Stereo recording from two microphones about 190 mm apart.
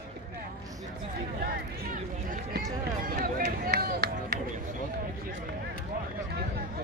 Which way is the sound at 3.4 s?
55° right (ahead or behind).